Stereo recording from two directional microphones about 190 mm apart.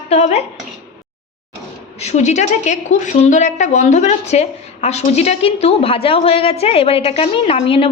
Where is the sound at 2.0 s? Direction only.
35° left (ahead or behind).